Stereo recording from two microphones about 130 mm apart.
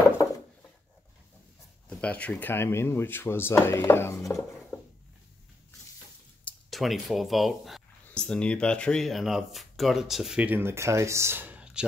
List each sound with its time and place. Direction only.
1.9 s speech: 10° left (ahead or behind)
4.4 s a sound: 10° left (ahead or behind)
6.7 s speech: centre (ahead or behind)